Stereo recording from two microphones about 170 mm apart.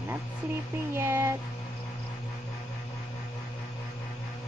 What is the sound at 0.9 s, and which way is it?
Speech, 15° right (ahead or behind).